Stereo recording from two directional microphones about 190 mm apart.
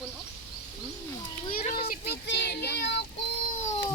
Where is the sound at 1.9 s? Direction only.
60° left (ahead or behind).